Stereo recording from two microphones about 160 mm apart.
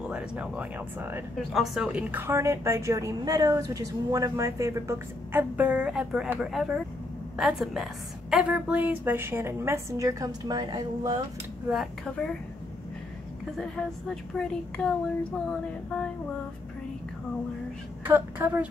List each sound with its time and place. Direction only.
0.1 s a woman's voice: 10° right (ahead or behind)
1.5 s a woman's voice: centre (ahead or behind); by 11.1 s 25° right (ahead or behind)
11.6 s a woman's voice: centre (ahead or behind)
13.6 s a woman's voice: 5° left (ahead or behind)
18.0 s a woman's voice: 15° right (ahead or behind)